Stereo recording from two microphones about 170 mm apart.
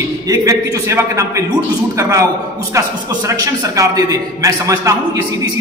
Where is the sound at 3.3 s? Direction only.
20° right (ahead or behind).